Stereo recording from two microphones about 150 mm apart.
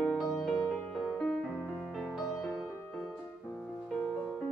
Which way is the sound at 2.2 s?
20° left (ahead or behind).